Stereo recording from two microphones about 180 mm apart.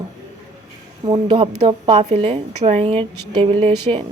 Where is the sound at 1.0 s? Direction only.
30° right (ahead or behind).